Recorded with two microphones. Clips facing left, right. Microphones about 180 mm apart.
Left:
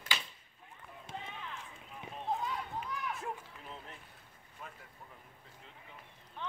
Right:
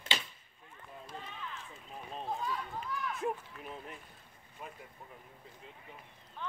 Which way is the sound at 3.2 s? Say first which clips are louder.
Right 6 dB; 15° right (ahead or behind).